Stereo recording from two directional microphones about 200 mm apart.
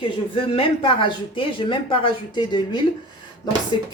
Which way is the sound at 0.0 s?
25° left (ahead or behind).